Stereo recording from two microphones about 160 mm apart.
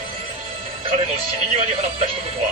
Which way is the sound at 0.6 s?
35° right (ahead or behind).